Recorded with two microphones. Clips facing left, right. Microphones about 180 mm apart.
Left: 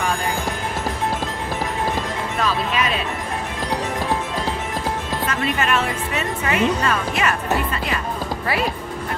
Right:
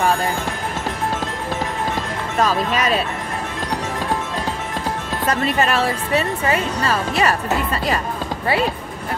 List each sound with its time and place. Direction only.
2.3 s speech: 40° right (ahead or behind)
5.3 s speech: 35° right (ahead or behind)